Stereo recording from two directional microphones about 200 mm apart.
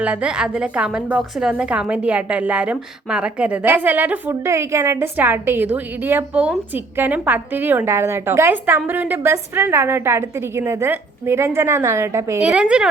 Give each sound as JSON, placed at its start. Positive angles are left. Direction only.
{"t": 0.0, "sound": "a woman's voice", "side_deg": -5}